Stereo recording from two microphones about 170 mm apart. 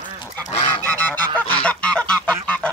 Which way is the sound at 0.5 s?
30° left (ahead or behind).